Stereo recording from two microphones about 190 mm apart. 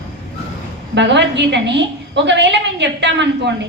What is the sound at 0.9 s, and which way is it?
A woman's voice, 70° right (ahead or behind).